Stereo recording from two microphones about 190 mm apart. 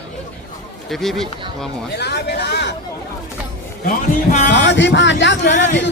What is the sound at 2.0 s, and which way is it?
Speech, 60° left (ahead or behind).